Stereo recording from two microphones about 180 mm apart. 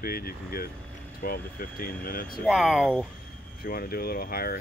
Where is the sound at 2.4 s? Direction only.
5° right (ahead or behind).